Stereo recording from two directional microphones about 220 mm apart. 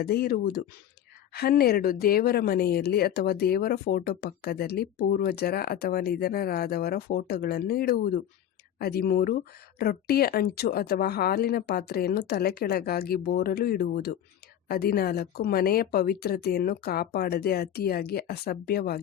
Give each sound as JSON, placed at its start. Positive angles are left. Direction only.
{"t": 0.0, "sound": "speech", "side_deg": 45}